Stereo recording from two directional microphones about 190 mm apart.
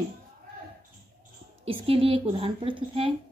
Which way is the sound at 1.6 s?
30° right (ahead or behind).